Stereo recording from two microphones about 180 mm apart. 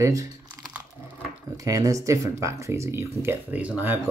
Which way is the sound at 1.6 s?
20° right (ahead or behind).